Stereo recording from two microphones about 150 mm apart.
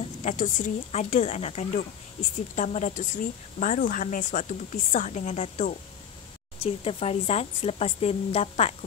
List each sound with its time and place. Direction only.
0.2 s speech: 55° left (ahead or behind)
6.6 s speech: 40° left (ahead or behind)